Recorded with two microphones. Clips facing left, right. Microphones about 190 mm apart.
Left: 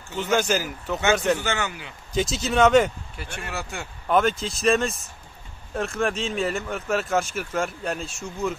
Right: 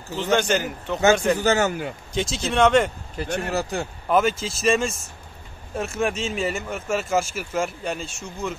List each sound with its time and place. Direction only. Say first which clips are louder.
0.2 s speech: right 2 dB; 5° left (ahead or behind)
1.4 s speech: right 8 dB; 40° right (ahead or behind)
2.1 s speech: left 1 dB; centre (ahead or behind)
3.2 s speech: right 9 dB; 40° right (ahead or behind)
4.1 s speech: even; 5° right (ahead or behind)